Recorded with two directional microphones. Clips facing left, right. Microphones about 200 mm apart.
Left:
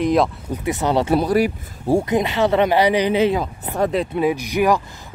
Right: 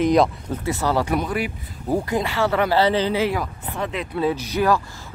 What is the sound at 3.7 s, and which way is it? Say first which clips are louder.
Speech: left 9 dB; 40° left (ahead or behind).